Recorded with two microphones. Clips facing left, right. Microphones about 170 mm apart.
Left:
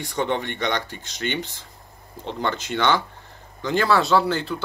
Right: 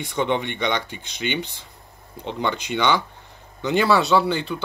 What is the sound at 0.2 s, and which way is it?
Speech, 40° left (ahead or behind).